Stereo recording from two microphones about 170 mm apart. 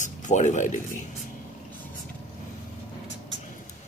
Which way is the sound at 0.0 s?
45° left (ahead or behind).